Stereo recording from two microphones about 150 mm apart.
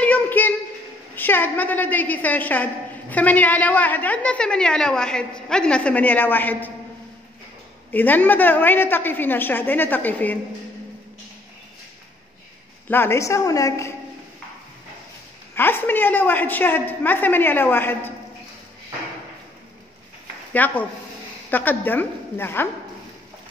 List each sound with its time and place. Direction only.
0.0 s music: 10° left (ahead or behind)
1.1 s a woman's voice: 15° left (ahead or behind)
7.9 s a woman's voice: 10° left (ahead or behind)
12.8 s a woman's voice: 15° left (ahead or behind)
15.5 s a woman's voice: 15° left (ahead or behind)
20.5 s a woman's voice: 10° left (ahead or behind)